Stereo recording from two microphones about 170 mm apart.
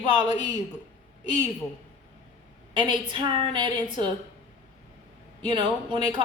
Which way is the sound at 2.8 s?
30° right (ahead or behind).